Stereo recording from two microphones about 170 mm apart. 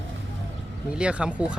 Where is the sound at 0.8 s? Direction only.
5° right (ahead or behind).